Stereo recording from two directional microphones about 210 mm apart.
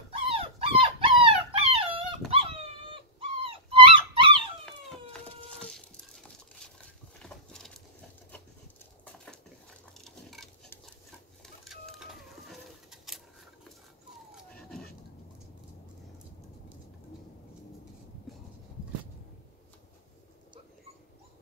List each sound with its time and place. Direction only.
0.3 s dog: 25° right (ahead or behind)
4.6 s a sound: centre (ahead or behind)
9.0 s patter: 5° left (ahead or behind)
10.0 s a sound: centre (ahead or behind)
12.4 s bird: centre (ahead or behind)
14.3 s dog: centre (ahead or behind)